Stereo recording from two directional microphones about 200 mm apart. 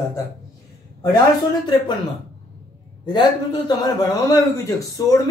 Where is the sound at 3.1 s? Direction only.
20° left (ahead or behind).